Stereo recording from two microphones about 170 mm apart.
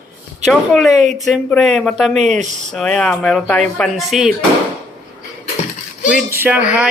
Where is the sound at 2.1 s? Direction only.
45° right (ahead or behind).